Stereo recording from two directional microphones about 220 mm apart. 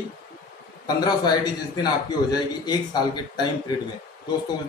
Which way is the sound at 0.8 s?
20° left (ahead or behind).